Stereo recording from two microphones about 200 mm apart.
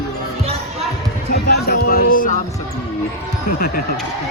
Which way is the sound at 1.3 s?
50° left (ahead or behind).